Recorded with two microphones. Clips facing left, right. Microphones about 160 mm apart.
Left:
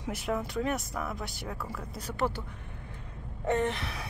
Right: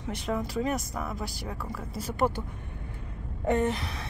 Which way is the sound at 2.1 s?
15° right (ahead or behind).